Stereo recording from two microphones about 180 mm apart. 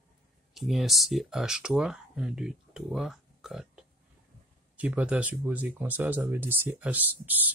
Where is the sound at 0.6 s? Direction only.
Centre (ahead or behind).